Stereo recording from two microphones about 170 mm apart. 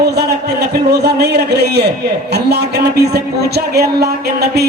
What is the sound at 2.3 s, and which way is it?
Speech, 75° right (ahead or behind).